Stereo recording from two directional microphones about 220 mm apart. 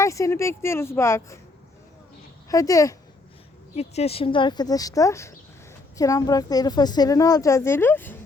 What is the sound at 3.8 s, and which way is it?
A woman's voice, 30° left (ahead or behind).